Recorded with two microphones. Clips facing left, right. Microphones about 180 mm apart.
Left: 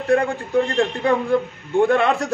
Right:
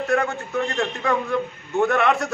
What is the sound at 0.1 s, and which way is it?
A man's voice, 30° left (ahead or behind).